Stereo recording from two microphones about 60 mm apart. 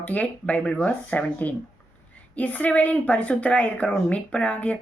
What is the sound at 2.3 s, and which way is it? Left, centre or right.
A woman's voice, left.